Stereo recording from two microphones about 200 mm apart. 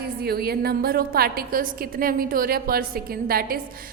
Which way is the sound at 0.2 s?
50° right (ahead or behind).